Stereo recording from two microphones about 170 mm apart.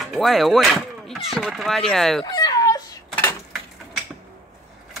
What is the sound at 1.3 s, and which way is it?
Speech, centre (ahead or behind).